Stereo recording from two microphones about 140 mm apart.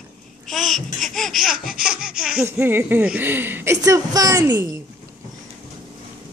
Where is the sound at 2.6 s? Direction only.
15° right (ahead or behind).